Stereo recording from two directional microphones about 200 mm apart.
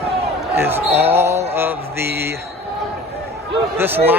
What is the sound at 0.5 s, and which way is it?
Speech, 10° right (ahead or behind).